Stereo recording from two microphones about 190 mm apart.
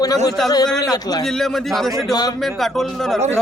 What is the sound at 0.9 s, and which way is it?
Speech, 20° left (ahead or behind).